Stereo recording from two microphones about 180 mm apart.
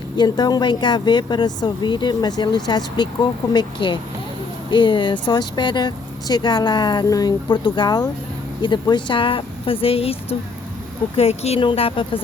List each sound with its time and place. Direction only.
0.2 s speech: 20° left (ahead or behind)